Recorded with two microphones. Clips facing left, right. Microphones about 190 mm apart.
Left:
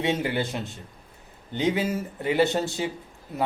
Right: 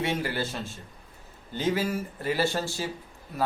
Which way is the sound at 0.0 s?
20° left (ahead or behind).